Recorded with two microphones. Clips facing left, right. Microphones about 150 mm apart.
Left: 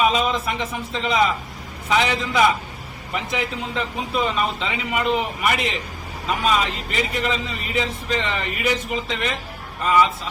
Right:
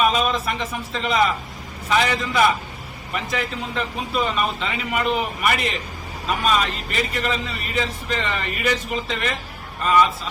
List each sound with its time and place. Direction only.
0.0 s a man's voice: 20° left (ahead or behind)